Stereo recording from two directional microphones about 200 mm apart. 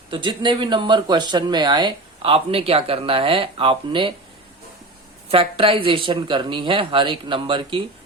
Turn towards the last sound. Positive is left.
turn(degrees=-25)  # may be behind; listen again after turning